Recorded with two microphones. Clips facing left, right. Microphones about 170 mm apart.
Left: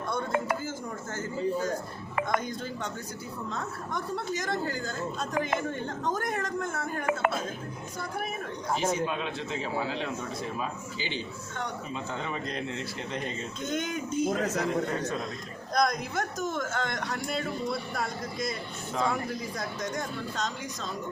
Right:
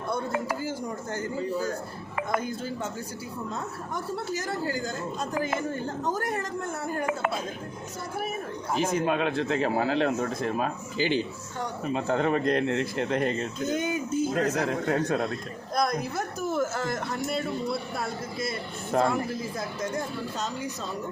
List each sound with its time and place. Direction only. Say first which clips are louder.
2.3 s speech: right 1 dB; 5° right (ahead or behind)
9.0 s a man's voice: right 6 dB; 60° right (ahead or behind)
13.6 s speech: right 1 dB; 5° right (ahead or behind)
14.3 s a man's voice: right 2 dB; 60° right (ahead or behind)
15.7 s speech: even; 5° right (ahead or behind)
18.9 s speech: right 5 dB; 55° right (ahead or behind)
19.4 s speech: right 2 dB; 5° right (ahead or behind)